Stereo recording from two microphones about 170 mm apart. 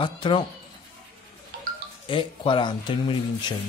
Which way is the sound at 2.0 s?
30° left (ahead or behind).